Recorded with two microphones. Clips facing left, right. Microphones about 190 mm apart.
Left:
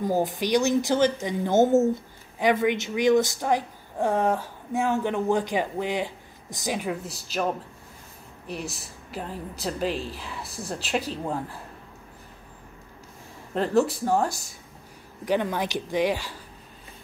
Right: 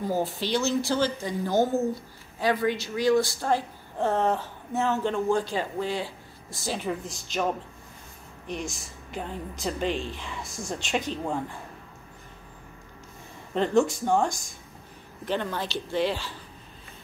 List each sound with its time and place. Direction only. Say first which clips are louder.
0.0 s a woman's voice: left 3 dB; 15° left (ahead or behind)
8.5 s a woman's voice: even; 5° left (ahead or behind)
13.6 s a woman's voice: even; 5° left (ahead or behind)